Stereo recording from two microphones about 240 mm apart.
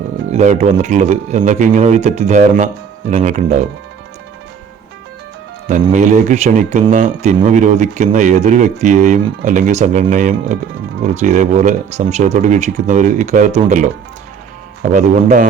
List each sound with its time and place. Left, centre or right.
0.3 s speech: right
5.8 s speech: right
14.9 s speech: right